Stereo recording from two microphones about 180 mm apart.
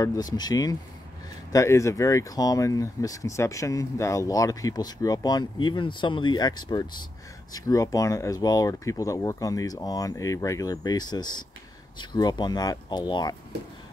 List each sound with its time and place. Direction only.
0.0 s speech: 20° left (ahead or behind)